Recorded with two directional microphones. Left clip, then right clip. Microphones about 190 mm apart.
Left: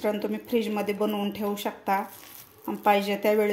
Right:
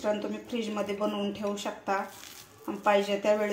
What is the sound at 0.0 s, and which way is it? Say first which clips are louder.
Speech: left 2 dB; 50° left (ahead or behind).